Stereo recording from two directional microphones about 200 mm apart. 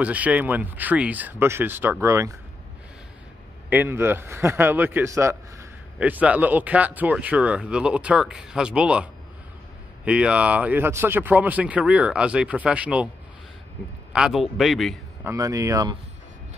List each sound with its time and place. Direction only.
0.0 s a man's voice: 5° right (ahead or behind)
3.7 s a man's voice: 10° right (ahead or behind)
14.1 s a man's voice: 5° right (ahead or behind)
15.2 s a man's voice: 15° right (ahead or behind)